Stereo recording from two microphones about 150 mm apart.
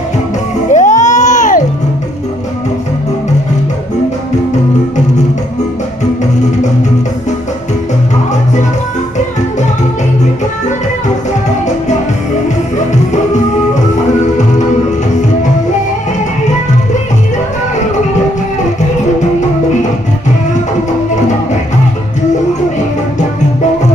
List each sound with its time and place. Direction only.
0.7 s music: 55° left (ahead or behind)
12.7 s music: 50° left (ahead or behind)